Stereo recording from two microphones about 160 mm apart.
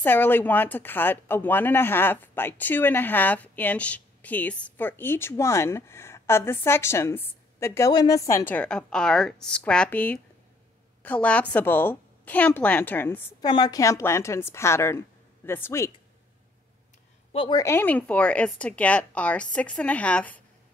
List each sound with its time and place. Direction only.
0.0 s speech: 10° left (ahead or behind)
13.4 s speech: 25° left (ahead or behind)
17.3 s a woman's voice: 35° left (ahead or behind)
17.6 s speech: 15° left (ahead or behind)